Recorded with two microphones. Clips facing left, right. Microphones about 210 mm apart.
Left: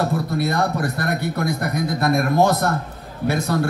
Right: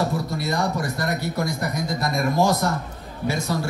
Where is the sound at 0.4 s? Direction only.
60° left (ahead or behind).